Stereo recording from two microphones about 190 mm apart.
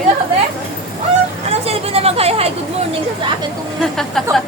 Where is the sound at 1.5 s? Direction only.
30° right (ahead or behind).